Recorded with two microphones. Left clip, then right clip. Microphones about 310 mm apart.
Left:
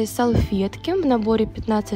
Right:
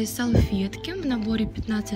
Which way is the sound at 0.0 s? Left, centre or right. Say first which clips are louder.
Left 5 dB; centre.